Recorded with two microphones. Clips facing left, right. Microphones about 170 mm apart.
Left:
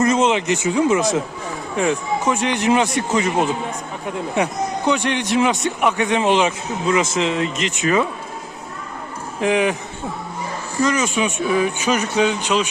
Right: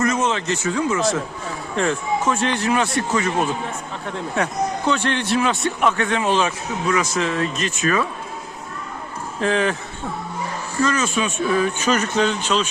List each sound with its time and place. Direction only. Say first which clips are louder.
0.0 s a man's voice: left 4 dB; 20° left (ahead or behind)
9.4 s speech: left 2 dB; 15° left (ahead or behind)
10.8 s speech: left 2 dB; 15° left (ahead or behind)